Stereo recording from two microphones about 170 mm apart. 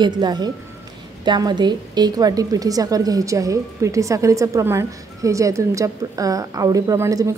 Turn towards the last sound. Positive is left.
turn(degrees=-20)  # may be behind; listen again after turning